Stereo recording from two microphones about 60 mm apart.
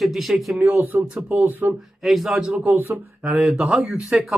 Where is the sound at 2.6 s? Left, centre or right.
Right.